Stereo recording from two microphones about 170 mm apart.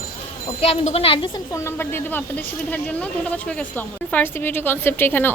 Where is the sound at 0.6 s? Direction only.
35° left (ahead or behind).